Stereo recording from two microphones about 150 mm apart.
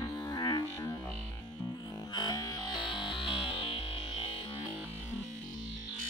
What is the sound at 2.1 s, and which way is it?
Music, 25° left (ahead or behind).